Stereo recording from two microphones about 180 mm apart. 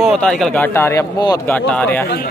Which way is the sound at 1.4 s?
10° left (ahead or behind).